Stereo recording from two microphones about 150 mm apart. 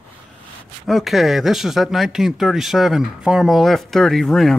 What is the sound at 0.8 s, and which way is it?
Speech, centre (ahead or behind).